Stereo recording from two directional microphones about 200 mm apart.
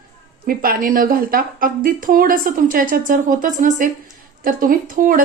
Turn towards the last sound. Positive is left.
turn(degrees=-45)  # may be behind; listen again after turning